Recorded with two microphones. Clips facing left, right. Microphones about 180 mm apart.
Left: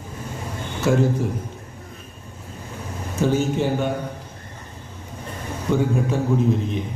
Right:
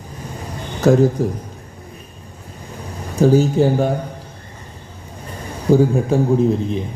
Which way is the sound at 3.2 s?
35° right (ahead or behind).